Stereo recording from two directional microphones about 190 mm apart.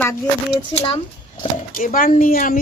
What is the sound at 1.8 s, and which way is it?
Speech, 45° left (ahead or behind).